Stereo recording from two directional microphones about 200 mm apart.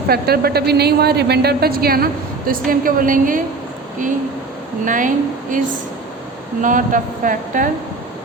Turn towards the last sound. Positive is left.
turn(degrees=-40)  # may be behind; listen again after turning